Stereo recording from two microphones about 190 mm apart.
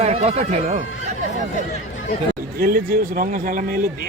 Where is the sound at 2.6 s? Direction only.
50° right (ahead or behind).